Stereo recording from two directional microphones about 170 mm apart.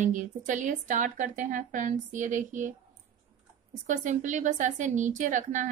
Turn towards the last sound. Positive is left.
turn(degrees=-45)  # may be behind; listen again after turning